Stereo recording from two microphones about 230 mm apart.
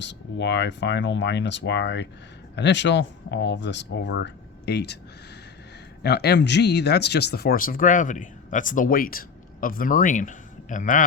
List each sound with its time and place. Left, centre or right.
0.0 s speech: left
6.0 s speech: left